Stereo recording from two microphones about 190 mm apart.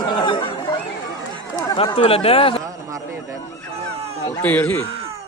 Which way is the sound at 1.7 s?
30° left (ahead or behind).